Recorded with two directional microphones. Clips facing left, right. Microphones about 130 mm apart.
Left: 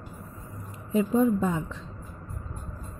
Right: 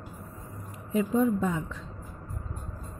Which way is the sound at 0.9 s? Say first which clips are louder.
Left 2 dB; 25° left (ahead or behind).